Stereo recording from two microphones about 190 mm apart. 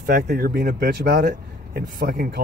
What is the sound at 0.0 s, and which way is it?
Speech, 50° right (ahead or behind).